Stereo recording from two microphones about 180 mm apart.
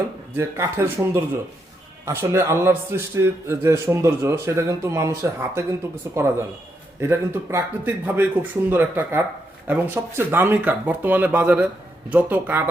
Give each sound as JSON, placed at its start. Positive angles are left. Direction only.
{"t": 0.3, "sound": "a man's voice", "side_deg": -15}
{"t": 7.0, "sound": "a man's voice", "side_deg": -15}